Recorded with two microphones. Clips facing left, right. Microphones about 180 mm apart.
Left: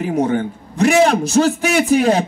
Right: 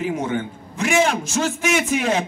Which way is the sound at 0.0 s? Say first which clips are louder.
Left 6 dB; 40° left (ahead or behind).